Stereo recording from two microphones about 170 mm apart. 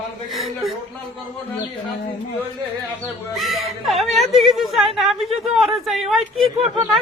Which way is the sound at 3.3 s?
Centre (ahead or behind).